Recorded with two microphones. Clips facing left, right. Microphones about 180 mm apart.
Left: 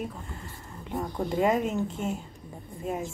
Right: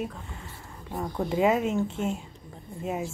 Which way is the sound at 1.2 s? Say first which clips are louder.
Right 2 dB; 5° right (ahead or behind).